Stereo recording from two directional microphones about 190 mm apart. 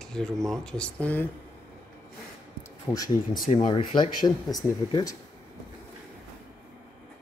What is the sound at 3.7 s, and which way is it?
Speech, 25° left (ahead or behind).